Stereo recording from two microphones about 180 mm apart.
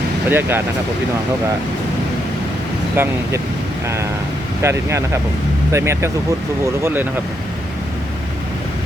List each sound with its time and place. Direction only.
0.3 s speech: 10° right (ahead or behind)
2.9 s speech: 10° right (ahead or behind)
4.6 s speech: 15° right (ahead or behind)